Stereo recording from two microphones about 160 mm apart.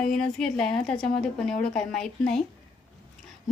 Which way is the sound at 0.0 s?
5° left (ahead or behind).